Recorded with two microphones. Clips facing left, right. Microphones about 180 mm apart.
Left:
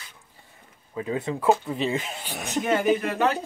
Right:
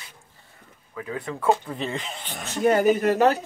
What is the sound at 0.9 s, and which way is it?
Speech, 20° left (ahead or behind).